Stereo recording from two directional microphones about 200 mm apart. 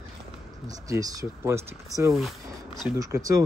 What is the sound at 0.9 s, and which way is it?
Speech, 15° right (ahead or behind).